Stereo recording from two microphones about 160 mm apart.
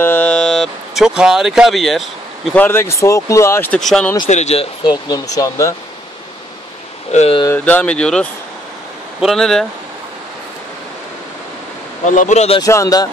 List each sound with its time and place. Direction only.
0.0 s speech: 10° left (ahead or behind)
2.6 s speech: 15° left (ahead or behind)
3.8 s speech: 5° left (ahead or behind)
4.3 s speech: 45° left (ahead or behind)
4.8 s speech: 25° left (ahead or behind)
7.1 s speech: 45° left (ahead or behind)
7.4 s speech: 10° left (ahead or behind)
12.0 s speech: 50° left (ahead or behind)
12.5 s speech: 20° left (ahead or behind)